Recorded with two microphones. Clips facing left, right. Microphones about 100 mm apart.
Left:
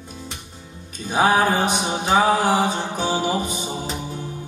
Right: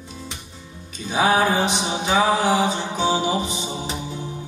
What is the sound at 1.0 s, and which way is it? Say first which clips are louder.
Mantra: left 1 dB; 45° left (ahead or behind).